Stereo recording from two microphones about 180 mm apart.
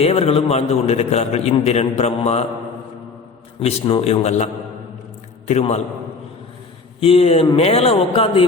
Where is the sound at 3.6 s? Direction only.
30° left (ahead or behind).